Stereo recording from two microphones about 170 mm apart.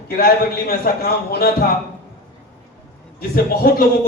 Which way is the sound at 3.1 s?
65° left (ahead or behind).